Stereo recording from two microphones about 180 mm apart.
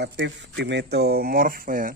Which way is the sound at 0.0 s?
70° right (ahead or behind).